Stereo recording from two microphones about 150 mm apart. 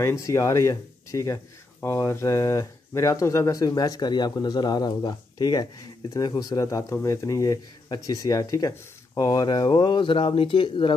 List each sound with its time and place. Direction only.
0.0 s speech: 20° left (ahead or behind)